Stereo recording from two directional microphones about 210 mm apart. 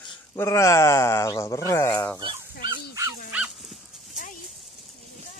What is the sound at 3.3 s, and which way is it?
Dog, 5° right (ahead or behind).